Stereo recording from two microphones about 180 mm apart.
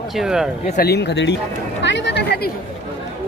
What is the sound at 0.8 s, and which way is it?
Speech, 65° left (ahead or behind).